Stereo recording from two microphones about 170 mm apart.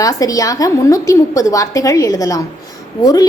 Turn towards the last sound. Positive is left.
turn(degrees=20)  # may be behind; listen again after turning